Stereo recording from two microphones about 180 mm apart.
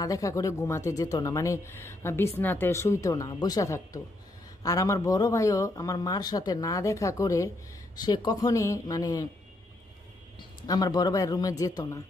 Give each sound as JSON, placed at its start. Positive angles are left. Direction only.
{"t": 0.0, "sound": "speech", "side_deg": 20}
{"t": 10.7, "sound": "speech", "side_deg": 20}